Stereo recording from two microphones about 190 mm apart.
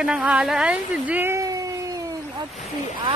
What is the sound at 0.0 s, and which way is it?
A woman's voice, 5° right (ahead or behind).